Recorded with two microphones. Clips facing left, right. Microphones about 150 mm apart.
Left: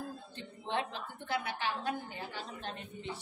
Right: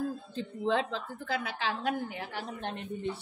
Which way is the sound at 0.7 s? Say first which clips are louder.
Right 6 dB; 90° right.